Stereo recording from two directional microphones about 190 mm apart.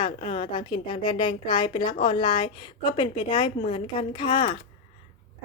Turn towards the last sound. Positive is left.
turn(degrees=25)  # may be behind; listen again after turning